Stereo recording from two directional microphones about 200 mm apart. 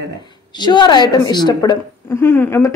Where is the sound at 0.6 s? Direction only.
20° left (ahead or behind).